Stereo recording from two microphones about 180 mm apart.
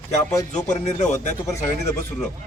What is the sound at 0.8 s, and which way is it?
Speech, 40° left (ahead or behind).